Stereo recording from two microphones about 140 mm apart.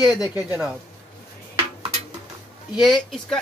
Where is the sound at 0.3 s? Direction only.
15° right (ahead or behind).